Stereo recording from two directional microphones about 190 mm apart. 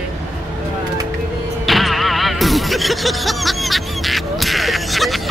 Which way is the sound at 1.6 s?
Centre (ahead or behind).